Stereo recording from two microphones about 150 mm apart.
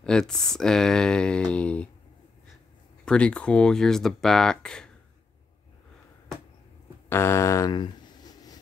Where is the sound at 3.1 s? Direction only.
10° left (ahead or behind).